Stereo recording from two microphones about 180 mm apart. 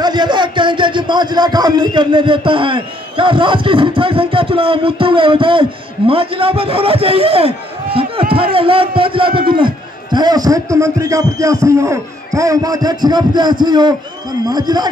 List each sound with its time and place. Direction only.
0.0 s a man's voice: 25° right (ahead or behind)